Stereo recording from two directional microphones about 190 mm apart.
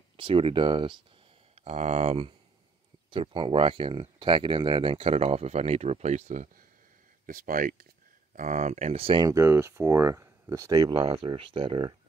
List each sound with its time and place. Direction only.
0.2 s speech: 25° right (ahead or behind)
9.3 s speech: 15° right (ahead or behind)